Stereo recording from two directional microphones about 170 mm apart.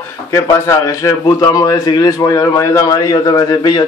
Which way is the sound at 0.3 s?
20° left (ahead or behind).